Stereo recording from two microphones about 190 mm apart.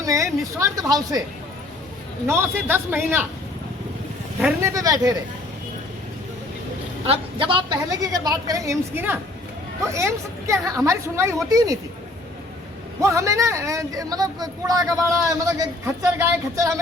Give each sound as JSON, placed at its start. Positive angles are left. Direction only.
{"t": 0.0, "sound": "a woman's voice", "side_deg": -15}
{"t": 2.2, "sound": "speech", "side_deg": -10}
{"t": 4.6, "sound": "speech", "side_deg": -15}
{"t": 7.1, "sound": "a woman's voice", "side_deg": -25}
{"t": 13.0, "sound": "speech", "side_deg": -15}